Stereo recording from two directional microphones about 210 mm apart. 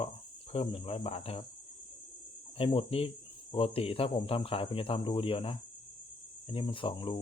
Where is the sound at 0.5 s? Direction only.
30° left (ahead or behind).